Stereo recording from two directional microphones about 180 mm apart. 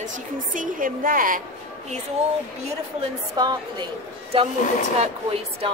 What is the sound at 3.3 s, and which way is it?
Speech, 25° right (ahead or behind).